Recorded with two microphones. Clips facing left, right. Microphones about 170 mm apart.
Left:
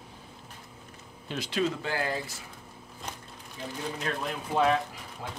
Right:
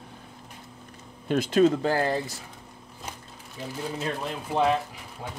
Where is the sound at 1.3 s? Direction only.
50° right (ahead or behind).